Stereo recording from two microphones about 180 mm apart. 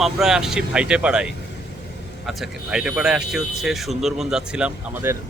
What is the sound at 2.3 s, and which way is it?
Speech, centre (ahead or behind).